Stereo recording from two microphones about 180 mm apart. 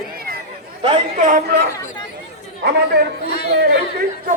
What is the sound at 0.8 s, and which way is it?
Speech, 40° right (ahead or behind).